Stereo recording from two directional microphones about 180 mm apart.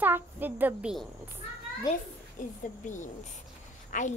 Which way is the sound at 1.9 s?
25° left (ahead or behind).